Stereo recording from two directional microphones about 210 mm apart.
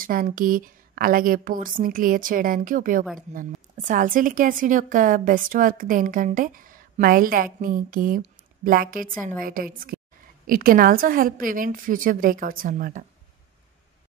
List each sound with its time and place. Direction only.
0.0 s a woman's voice: 40° right (ahead or behind)